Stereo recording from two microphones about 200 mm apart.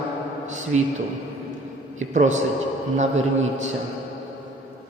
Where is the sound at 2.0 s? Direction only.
40° right (ahead or behind).